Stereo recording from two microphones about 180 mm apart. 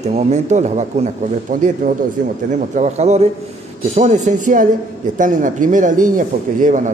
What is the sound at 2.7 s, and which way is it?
Speech, 40° right (ahead or behind).